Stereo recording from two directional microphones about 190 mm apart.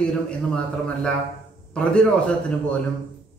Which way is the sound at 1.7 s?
5° left (ahead or behind).